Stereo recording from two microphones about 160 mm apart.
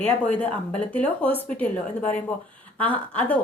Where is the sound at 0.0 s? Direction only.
10° left (ahead or behind).